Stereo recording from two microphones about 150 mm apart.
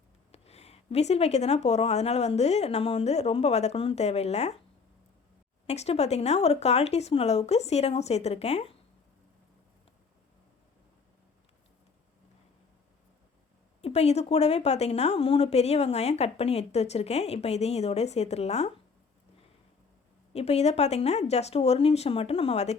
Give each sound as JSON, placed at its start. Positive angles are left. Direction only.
{"t": 0.3, "sound": "a woman's voice", "side_deg": 45}
{"t": 5.6, "sound": "a woman's voice", "side_deg": 45}
{"t": 13.8, "sound": "a woman's voice", "side_deg": 45}
{"t": 20.3, "sound": "a woman's voice", "side_deg": 45}